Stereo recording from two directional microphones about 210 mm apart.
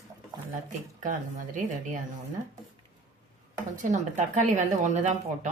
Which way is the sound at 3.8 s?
35° right (ahead or behind).